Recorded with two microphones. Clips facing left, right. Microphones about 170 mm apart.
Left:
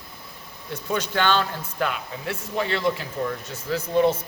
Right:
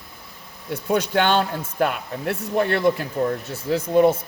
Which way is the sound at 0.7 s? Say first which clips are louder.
Right 5 dB; 55° right (ahead or behind).